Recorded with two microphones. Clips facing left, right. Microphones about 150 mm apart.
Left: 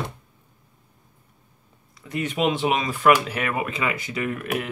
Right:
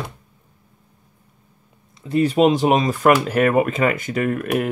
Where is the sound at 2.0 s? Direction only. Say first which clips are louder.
Right 8 dB; 30° right (ahead or behind).